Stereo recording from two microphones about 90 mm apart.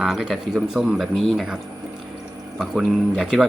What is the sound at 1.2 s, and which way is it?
Speech, 5° left (ahead or behind).